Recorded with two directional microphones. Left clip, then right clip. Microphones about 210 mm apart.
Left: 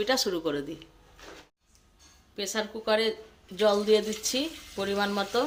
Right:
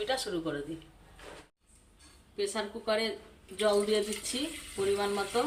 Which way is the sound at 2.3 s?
50° left (ahead or behind).